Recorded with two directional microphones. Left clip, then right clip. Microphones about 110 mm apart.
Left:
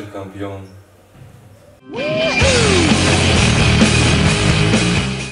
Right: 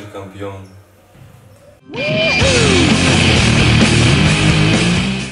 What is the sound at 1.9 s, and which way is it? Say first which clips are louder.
Music: right 2 dB; centre (ahead or behind).